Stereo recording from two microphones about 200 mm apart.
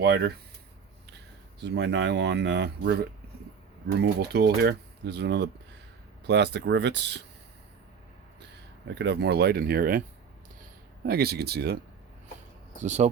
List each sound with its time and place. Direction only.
0.0 s speech: 55° right (ahead or behind)
1.6 s speech: 60° right (ahead or behind)
9.0 s speech: 55° right (ahead or behind)
11.0 s speech: 50° right (ahead or behind)
12.8 s speech: 35° right (ahead or behind)